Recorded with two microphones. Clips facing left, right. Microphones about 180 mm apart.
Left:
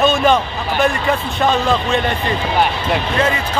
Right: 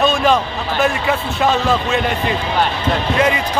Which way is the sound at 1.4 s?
5° right (ahead or behind).